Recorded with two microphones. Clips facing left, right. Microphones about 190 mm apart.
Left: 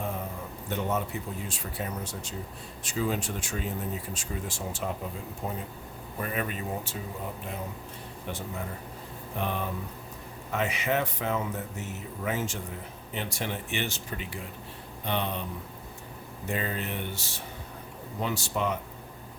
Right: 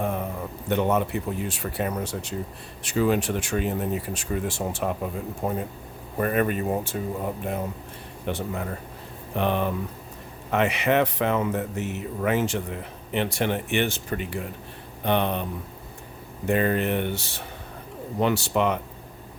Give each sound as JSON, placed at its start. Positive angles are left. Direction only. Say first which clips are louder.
{"t": 0.7, "sound": "speech", "louder": "right 7 dB", "side_deg": -70}
{"t": 8.3, "sound": "speech", "louder": "right 7 dB", "side_deg": -65}
{"t": 16.5, "sound": "speech", "louder": "right 10 dB", "side_deg": -65}